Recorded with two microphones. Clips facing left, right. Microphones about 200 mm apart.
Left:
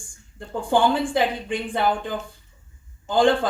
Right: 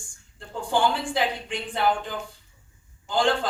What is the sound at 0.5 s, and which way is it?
Speech, 55° left (ahead or behind).